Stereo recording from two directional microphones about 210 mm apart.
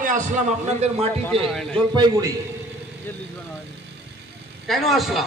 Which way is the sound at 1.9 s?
20° right (ahead or behind).